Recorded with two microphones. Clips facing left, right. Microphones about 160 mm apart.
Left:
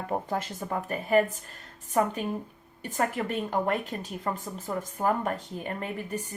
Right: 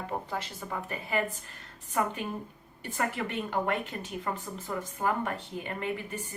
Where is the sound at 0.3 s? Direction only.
45° left (ahead or behind).